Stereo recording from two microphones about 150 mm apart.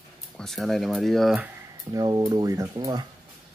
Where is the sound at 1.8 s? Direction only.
25° right (ahead or behind).